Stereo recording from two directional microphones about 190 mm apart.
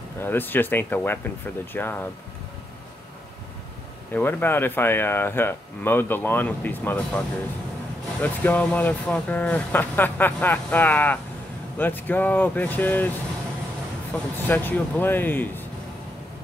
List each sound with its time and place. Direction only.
0.2 s speech: 10° left (ahead or behind)
4.1 s speech: 10° left (ahead or behind)
14.1 s speech: 5° left (ahead or behind)